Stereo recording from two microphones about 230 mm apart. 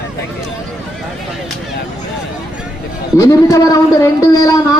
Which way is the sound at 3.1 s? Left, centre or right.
Centre.